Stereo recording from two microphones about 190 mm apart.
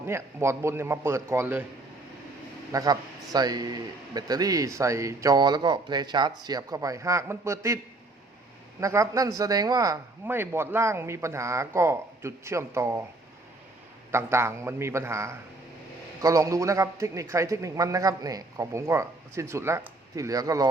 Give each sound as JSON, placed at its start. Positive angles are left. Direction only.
{"t": 0.0, "sound": "a man's voice", "side_deg": -15}
{"t": 2.7, "sound": "speech", "side_deg": -20}
{"t": 8.8, "sound": "a man's voice", "side_deg": -15}
{"t": 14.1, "sound": "a man's voice", "side_deg": -15}